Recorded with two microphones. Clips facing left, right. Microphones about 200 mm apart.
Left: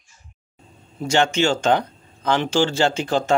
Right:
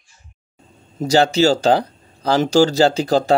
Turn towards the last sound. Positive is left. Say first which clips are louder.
# right 5 dB
turn(degrees=-35)  # may be behind; listen again after turning